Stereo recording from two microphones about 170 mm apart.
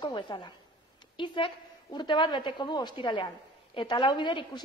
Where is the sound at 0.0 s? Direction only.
25° left (ahead or behind).